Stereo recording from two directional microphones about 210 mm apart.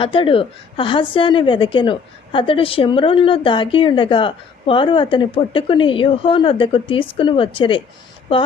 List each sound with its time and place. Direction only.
0.0 s a woman's voice: 25° left (ahead or behind)